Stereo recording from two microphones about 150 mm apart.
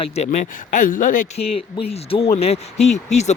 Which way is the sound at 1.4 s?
40° left (ahead or behind).